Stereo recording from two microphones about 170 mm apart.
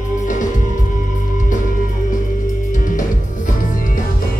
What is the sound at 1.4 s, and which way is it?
Music, 50° left (ahead or behind).